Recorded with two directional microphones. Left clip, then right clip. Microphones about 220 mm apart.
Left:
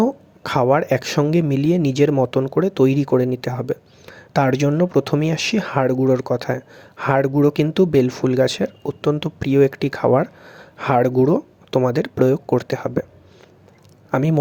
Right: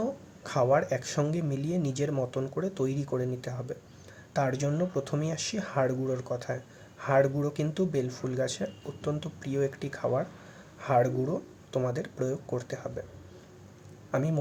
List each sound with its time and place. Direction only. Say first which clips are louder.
0.0 s speech: left 13 dB; 40° left (ahead or behind)
14.1 s speech: left 10 dB; 40° left (ahead or behind)